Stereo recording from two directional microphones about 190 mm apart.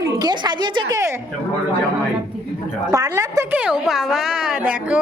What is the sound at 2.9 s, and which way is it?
A woman's voice, 20° right (ahead or behind).